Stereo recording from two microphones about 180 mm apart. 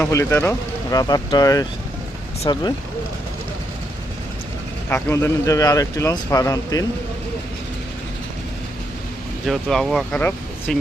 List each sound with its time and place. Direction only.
0.0 s speech: 15° left (ahead or behind)
4.9 s a man's voice: 10° left (ahead or behind)
9.5 s speech: centre (ahead or behind)